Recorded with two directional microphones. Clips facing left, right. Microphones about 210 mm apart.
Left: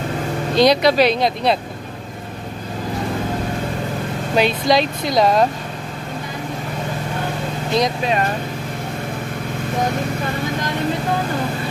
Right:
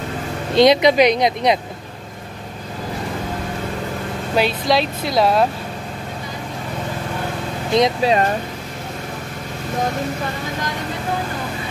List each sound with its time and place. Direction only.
0.6 s speech: 20° right (ahead or behind)
4.4 s speech: 5° right (ahead or behind)
7.7 s speech: 30° right (ahead or behind)